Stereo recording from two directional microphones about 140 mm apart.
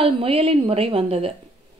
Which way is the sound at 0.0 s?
45° right (ahead or behind).